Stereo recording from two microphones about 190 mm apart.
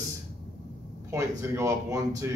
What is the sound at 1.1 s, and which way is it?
A man's voice, 15° right (ahead or behind).